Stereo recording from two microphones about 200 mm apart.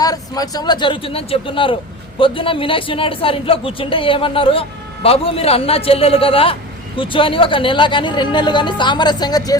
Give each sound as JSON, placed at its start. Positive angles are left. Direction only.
{"t": 0.0, "sound": "a man's voice", "side_deg": 20}